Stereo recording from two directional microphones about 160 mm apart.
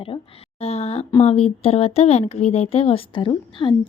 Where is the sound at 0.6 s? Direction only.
40° left (ahead or behind).